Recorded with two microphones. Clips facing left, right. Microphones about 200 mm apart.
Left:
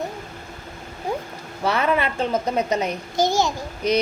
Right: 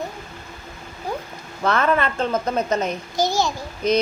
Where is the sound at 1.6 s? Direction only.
15° left (ahead or behind).